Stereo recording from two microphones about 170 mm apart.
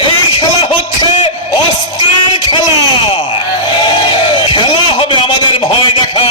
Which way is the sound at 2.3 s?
30° left (ahead or behind).